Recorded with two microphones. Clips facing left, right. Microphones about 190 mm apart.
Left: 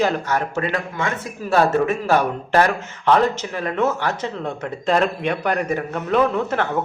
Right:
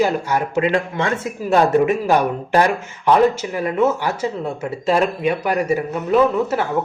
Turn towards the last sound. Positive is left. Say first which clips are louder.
# right 3 dB
turn(degrees=-5)  # may be behind; listen again after turning